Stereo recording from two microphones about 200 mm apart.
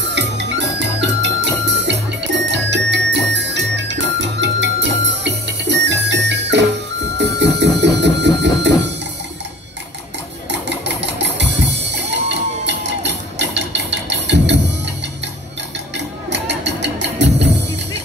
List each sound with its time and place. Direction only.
0.1 s music: 60° right (ahead or behind)
11.0 s music: 60° right (ahead or behind)
16.3 s music: 60° right (ahead or behind)